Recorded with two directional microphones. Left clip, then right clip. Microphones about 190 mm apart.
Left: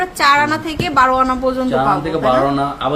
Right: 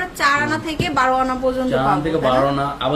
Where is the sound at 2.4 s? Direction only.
Centre (ahead or behind).